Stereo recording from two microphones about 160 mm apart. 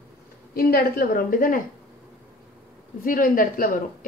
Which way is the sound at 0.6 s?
70° left (ahead or behind).